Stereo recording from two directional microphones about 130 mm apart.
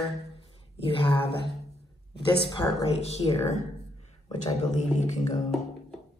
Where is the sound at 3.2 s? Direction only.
40° left (ahead or behind).